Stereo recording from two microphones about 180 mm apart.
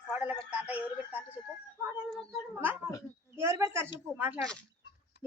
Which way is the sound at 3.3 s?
15° right (ahead or behind).